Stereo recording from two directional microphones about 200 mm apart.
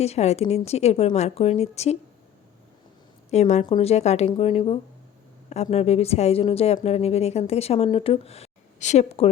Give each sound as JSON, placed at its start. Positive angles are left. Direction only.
{"t": 0.0, "sound": "speech", "side_deg": 35}
{"t": 3.2, "sound": "a woman's voice", "side_deg": 35}